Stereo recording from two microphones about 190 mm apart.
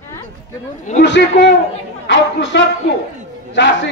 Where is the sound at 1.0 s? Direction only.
70° left (ahead or behind).